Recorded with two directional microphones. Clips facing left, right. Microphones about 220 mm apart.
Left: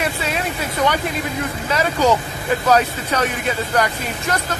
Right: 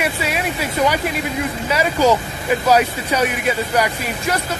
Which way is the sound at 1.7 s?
10° right (ahead or behind).